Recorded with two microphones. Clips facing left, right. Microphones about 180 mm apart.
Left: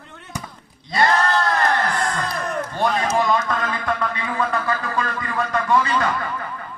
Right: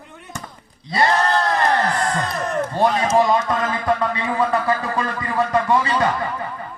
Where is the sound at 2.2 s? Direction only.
Centre (ahead or behind).